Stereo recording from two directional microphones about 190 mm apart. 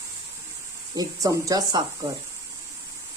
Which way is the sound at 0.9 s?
20° right (ahead or behind).